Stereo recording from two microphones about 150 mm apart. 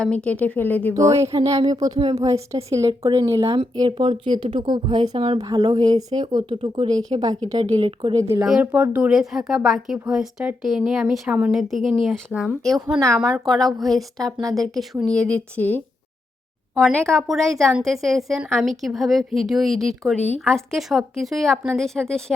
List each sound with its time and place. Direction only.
0.0 s a woman's voice: 10° left (ahead or behind)
0.9 s a woman's voice: 20° right (ahead or behind)
2.0 s speech: 40° right (ahead or behind)
2.2 s a woman's voice: 20° right (ahead or behind)
3.6 s speech: 35° right (ahead or behind)
5.4 s a woman's voice: 25° right (ahead or behind)
8.1 s a woman's voice: 20° right (ahead or behind)
8.4 s speech: 5° right (ahead or behind)
16.7 s a woman's voice: centre (ahead or behind)